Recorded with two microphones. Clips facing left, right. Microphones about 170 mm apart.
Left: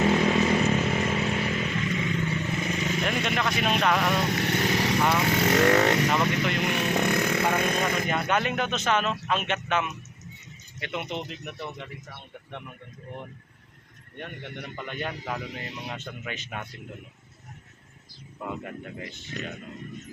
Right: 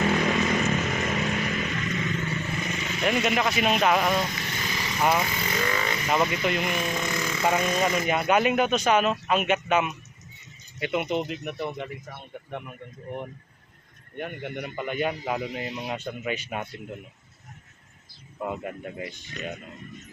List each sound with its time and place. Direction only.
0.0 s chainsaw: 25° left (ahead or behind)
1.9 s vehicle: 15° left (ahead or behind); by 3.0 s 35° left (ahead or behind)
3.0 s speech: 5° right (ahead or behind)
4.2 s vehicle: 65° left (ahead or behind)
5.2 s speech: 70° left (ahead or behind)
6.1 s speech: 5° right (ahead or behind)
6.7 s a sound: 65° left (ahead or behind)
7.5 s speech: 55° left (ahead or behind)
8.0 s speech: 10° right (ahead or behind)
14.2 s speech: 10° right (ahead or behind)
18.3 s speech: 20° right (ahead or behind)